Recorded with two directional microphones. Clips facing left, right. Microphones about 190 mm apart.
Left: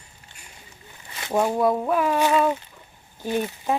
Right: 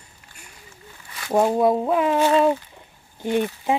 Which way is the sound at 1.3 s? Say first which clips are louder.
Right 3 dB; 20° right (ahead or behind).